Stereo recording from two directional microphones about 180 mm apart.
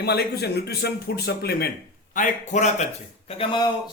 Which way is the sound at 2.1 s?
45° left (ahead or behind).